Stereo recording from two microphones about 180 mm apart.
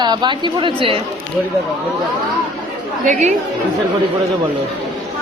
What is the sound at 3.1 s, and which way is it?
Speech, 40° right (ahead or behind).